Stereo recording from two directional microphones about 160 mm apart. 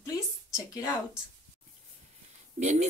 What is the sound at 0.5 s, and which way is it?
Speech, 20° left (ahead or behind).